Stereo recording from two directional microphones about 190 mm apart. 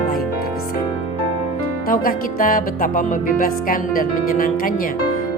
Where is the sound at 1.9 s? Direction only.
45° left (ahead or behind).